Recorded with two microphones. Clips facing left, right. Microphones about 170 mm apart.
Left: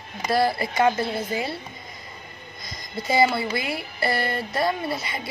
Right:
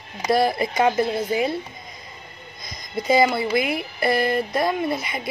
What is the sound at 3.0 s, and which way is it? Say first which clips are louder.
Speech: right 2 dB; 20° right (ahead or behind).